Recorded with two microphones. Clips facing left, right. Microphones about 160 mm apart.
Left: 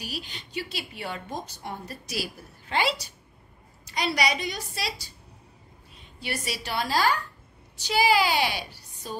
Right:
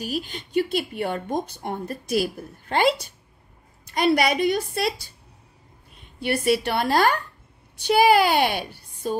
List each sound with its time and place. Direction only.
0.0 s a woman's voice: 45° right (ahead or behind)
6.1 s a woman's voice: 55° right (ahead or behind)